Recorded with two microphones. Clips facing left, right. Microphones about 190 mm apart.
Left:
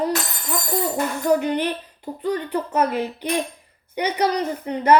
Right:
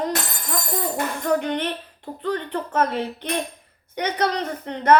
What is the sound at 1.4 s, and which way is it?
A woman's voice, 5° left (ahead or behind).